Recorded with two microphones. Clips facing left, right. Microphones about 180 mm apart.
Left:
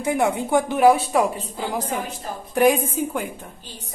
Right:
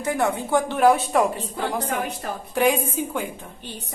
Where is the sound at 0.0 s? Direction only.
15° left (ahead or behind).